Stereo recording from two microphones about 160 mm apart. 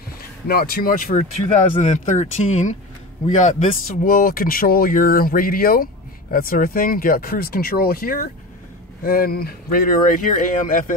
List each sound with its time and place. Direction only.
0.5 s speech: 70° left (ahead or behind)
1.8 s speech: 50° left (ahead or behind)